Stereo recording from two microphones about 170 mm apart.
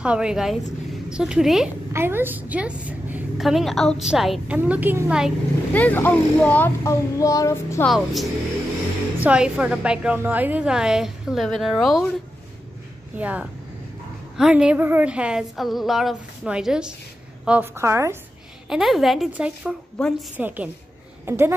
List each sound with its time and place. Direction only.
0.0 s a woman's voice: 5° right (ahead or behind)
1.9 s a woman's voice: 15° right (ahead or behind)
5.7 s a child's voice: 10° left (ahead or behind)
7.8 s a woman's voice: centre (ahead or behind)
13.2 s a woman's voice: 10° right (ahead or behind)
18.7 s a woman's voice: centre (ahead or behind)
20.0 s a woman's voice: 5° left (ahead or behind)
20.3 s a woman's voice: 10° right (ahead or behind)